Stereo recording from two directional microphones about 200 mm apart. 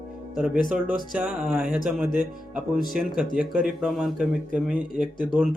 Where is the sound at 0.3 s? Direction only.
5° right (ahead or behind).